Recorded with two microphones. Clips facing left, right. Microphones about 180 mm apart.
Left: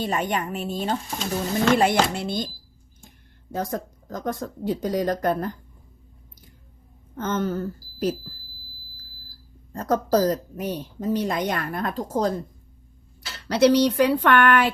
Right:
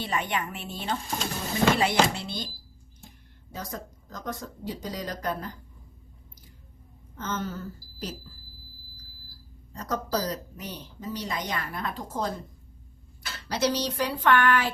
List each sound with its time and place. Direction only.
0.0 s a woman's voice: 45° left (ahead or behind)
3.5 s speech: 55° left (ahead or behind)
7.2 s speech: 55° left (ahead or behind)
9.7 s speech: 50° left (ahead or behind)
13.5 s speech: 60° left (ahead or behind)